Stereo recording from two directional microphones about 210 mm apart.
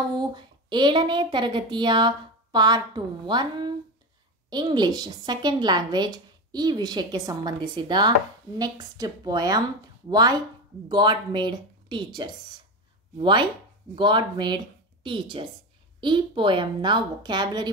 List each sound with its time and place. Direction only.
0.2 s a woman's voice: 20° right (ahead or behind)